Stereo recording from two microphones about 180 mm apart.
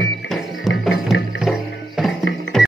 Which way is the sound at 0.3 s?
Centre (ahead or behind).